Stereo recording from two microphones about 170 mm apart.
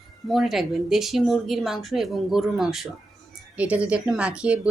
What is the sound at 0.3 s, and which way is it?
A woman's voice, centre (ahead or behind).